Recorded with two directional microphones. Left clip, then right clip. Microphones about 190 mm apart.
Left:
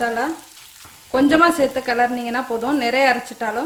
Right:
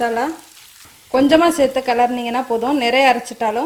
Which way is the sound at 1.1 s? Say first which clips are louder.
Right 2 dB; 25° right (ahead or behind).